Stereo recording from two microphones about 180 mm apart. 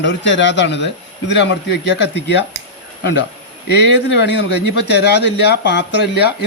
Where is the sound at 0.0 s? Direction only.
80° left.